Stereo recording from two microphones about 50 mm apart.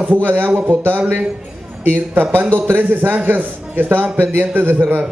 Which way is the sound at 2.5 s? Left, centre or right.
Right.